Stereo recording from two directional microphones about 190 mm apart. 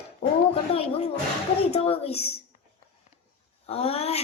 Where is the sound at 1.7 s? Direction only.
30° left (ahead or behind).